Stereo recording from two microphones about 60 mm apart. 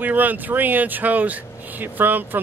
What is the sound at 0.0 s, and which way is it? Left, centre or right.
Speech, right.